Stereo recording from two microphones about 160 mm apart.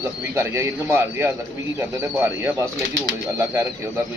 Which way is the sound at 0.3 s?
20° right (ahead or behind).